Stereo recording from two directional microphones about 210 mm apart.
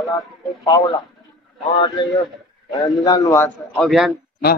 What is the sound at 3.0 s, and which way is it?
A man's voice, 15° left (ahead or behind).